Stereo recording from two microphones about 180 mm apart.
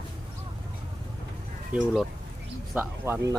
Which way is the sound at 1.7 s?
5° right (ahead or behind).